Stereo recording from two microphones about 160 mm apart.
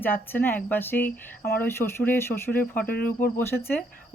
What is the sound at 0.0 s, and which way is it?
Speech, 10° left (ahead or behind).